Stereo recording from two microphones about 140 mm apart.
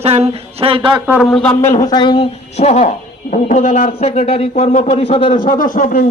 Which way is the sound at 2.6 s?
55° left (ahead or behind).